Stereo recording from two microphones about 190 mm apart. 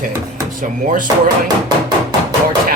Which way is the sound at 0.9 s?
45° right (ahead or behind).